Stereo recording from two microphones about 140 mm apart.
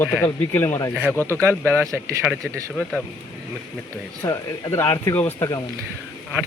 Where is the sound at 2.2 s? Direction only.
5° right (ahead or behind).